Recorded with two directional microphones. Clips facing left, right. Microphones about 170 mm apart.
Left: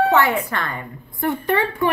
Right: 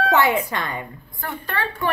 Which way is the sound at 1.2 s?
20° left (ahead or behind).